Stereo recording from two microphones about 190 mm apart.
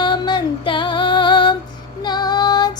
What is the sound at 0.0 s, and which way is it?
Music, 25° left (ahead or behind).